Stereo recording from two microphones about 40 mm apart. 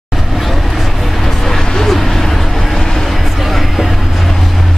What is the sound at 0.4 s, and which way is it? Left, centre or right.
Vehicle, centre.